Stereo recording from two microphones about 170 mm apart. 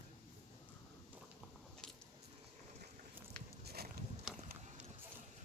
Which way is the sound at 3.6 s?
65° right (ahead or behind).